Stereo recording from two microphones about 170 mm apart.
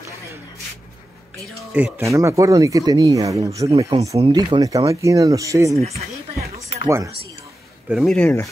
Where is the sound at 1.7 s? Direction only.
10° right (ahead or behind).